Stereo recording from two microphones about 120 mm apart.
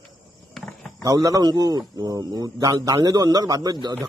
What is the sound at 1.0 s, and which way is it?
A man's voice, 30° right (ahead or behind).